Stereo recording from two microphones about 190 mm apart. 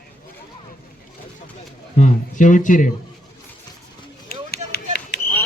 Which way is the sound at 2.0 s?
40° left (ahead or behind).